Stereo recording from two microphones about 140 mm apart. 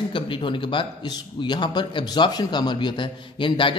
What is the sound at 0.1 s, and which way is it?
A man's voice, 35° left (ahead or behind).